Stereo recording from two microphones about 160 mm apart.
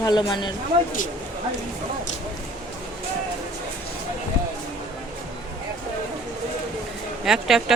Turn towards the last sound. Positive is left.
turn(degrees=0)  # may be behind; listen again after turning